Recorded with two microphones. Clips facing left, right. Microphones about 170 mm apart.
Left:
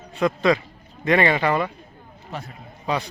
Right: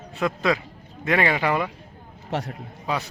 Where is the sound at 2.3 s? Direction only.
75° right (ahead or behind).